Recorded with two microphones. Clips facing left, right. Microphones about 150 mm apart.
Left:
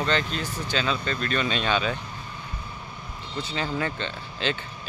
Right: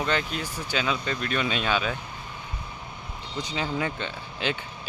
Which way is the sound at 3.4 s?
15° right (ahead or behind).